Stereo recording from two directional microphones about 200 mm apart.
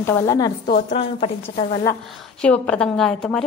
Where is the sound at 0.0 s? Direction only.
15° left (ahead or behind).